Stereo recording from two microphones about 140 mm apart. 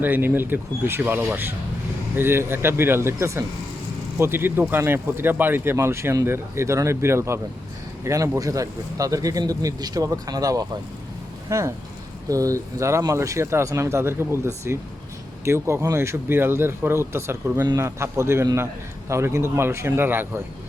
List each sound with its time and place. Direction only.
0.0 s speech: 15° right (ahead or behind)